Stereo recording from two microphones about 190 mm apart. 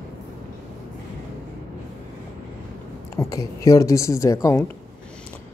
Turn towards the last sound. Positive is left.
turn(degrees=15)  # may be behind; listen again after turning